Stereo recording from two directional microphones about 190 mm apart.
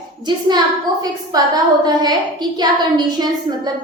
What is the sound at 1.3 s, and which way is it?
A woman's voice, 20° right (ahead or behind).